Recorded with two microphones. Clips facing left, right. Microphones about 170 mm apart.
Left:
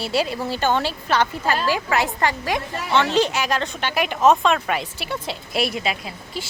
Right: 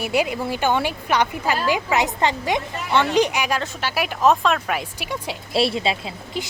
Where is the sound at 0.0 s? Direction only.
15° right (ahead or behind); by 4.8 s centre (ahead or behind).